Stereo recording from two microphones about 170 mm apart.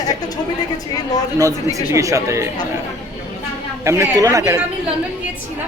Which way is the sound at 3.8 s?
15° right (ahead or behind).